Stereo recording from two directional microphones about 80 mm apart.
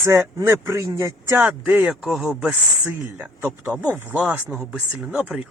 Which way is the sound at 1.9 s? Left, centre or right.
Centre.